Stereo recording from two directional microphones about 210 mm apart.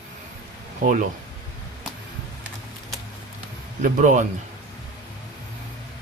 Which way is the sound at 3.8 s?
35° right (ahead or behind).